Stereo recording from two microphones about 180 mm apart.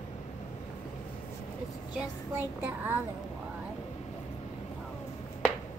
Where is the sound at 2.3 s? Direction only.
10° right (ahead or behind).